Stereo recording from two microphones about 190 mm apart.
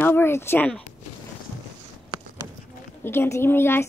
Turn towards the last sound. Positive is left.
turn(degrees=10)  # may be behind; listen again after turning